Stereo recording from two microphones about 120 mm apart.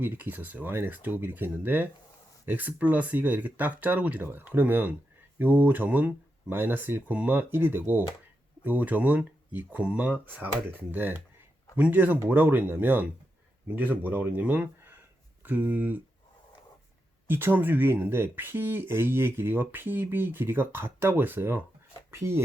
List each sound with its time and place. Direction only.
0.0 s speech: 15° right (ahead or behind)
17.2 s speech: 20° right (ahead or behind)